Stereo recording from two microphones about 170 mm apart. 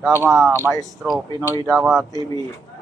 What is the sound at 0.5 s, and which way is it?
Speech, 15° right (ahead or behind).